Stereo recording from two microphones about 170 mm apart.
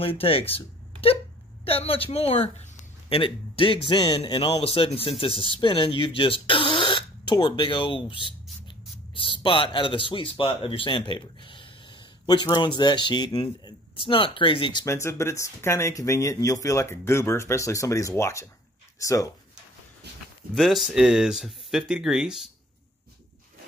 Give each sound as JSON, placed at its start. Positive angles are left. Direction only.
{"t": 0.0, "sound": "a man's voice", "side_deg": 35}
{"t": 20.5, "sound": "speech", "side_deg": 0}